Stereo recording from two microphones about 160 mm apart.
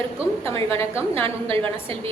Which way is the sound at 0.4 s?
35° right (ahead or behind).